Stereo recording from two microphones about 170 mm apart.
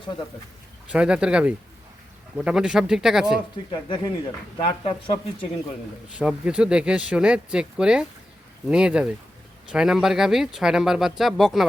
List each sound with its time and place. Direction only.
0.9 s speech: 5° right (ahead or behind)
3.7 s speech: 25° left (ahead or behind)
6.1 s speech: 5° right (ahead or behind)